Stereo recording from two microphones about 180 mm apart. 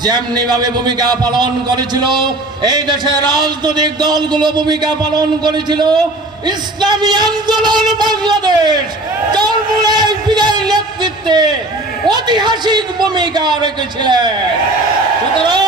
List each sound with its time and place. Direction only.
0.0 s a man's voice: 20° right (ahead or behind)
9.3 s a sound: 25° right (ahead or behind)
12.0 s a man's voice: 25° right (ahead or behind)
15.4 s a man's voice: 25° right (ahead or behind)